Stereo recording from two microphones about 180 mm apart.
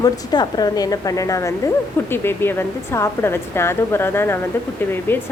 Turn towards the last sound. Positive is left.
turn(degrees=10)  # may be behind; listen again after turning